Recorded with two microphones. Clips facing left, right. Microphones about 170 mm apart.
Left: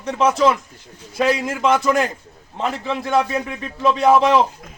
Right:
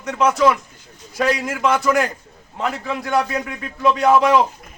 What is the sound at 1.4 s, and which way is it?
Speech, 25° left (ahead or behind).